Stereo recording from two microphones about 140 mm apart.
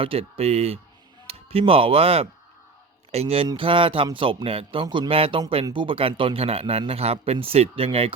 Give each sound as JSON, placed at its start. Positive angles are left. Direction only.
{"t": 0.0, "sound": "a man's voice", "side_deg": -40}